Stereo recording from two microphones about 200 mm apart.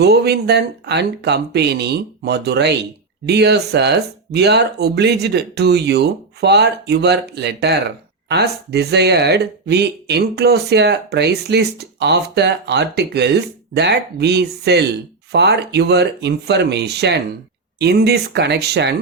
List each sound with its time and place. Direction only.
0.0 s speech: 55° right (ahead or behind)